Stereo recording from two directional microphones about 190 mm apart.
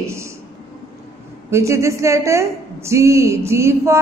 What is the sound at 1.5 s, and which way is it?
A woman's voice, 15° right (ahead or behind).